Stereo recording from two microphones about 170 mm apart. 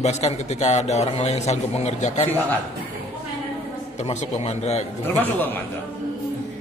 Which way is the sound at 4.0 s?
40° left (ahead or behind).